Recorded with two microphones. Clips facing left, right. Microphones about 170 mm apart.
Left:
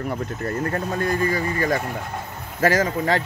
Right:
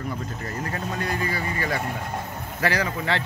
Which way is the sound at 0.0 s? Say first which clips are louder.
Left 5 dB; 60° left (ahead or behind).